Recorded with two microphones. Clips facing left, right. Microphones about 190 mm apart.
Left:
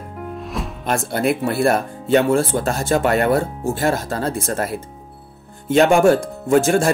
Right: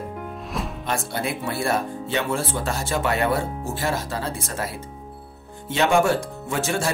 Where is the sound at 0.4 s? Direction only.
Centre (ahead or behind).